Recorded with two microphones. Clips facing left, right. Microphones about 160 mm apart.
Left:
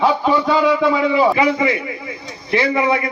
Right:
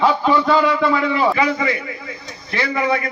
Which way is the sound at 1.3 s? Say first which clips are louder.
Left 3 dB; 20° left (ahead or behind).